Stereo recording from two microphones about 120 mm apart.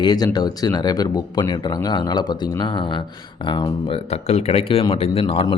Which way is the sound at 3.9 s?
60° left (ahead or behind).